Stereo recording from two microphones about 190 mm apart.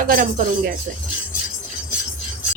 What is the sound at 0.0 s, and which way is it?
Speech, 45° right (ahead or behind).